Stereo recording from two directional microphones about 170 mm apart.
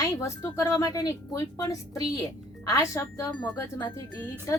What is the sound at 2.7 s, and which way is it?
A woman's voice, 15° left (ahead or behind).